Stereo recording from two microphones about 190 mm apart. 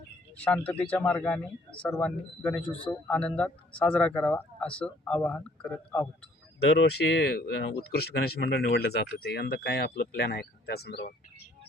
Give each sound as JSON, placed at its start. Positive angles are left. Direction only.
{"t": 0.4, "sound": "a man's voice", "side_deg": 5}
{"t": 6.6, "sound": "speech", "side_deg": 65}